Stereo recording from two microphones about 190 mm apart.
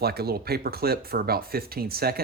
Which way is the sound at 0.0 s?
55° right (ahead or behind).